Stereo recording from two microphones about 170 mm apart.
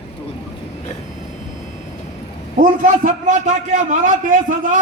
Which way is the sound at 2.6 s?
45° right (ahead or behind).